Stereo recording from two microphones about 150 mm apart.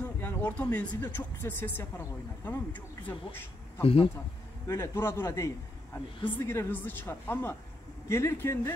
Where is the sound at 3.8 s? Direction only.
40° left (ahead or behind).